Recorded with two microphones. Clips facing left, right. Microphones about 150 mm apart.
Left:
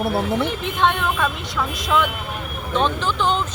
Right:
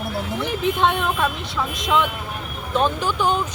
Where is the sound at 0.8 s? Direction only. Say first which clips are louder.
Left 3 dB; 5° right (ahead or behind).